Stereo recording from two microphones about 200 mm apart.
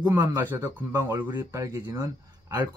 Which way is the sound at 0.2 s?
15° right (ahead or behind).